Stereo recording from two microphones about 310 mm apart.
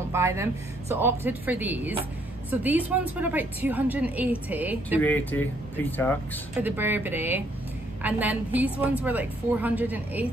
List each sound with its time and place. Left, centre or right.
0.1 s a woman's voice: centre
5.0 s a woman's voice: centre
6.6 s a woman's voice: centre